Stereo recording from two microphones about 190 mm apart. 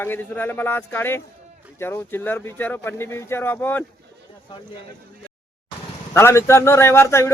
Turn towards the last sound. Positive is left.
turn(degrees=15)  # may be behind; listen again after turning